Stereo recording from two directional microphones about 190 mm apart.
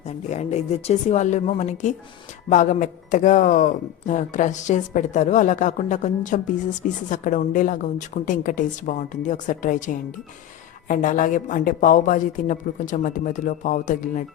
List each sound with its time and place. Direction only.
0.3 s a man's voice: 35° left (ahead or behind)